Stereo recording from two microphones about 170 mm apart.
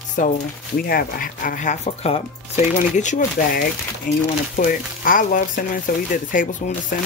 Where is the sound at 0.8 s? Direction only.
60° left (ahead or behind).